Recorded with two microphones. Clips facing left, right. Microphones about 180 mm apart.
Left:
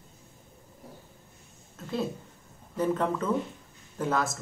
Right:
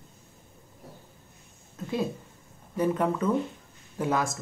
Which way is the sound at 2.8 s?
10° right (ahead or behind).